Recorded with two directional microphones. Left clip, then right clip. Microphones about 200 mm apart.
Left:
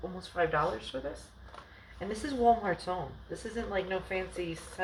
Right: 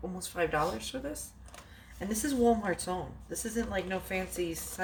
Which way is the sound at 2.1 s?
25° right (ahead or behind).